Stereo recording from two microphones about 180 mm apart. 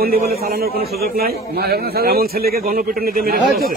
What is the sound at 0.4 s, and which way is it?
A man's voice, 60° right (ahead or behind).